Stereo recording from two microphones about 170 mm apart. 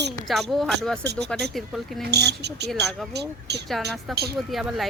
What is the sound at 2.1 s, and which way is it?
Speech, 75° right (ahead or behind).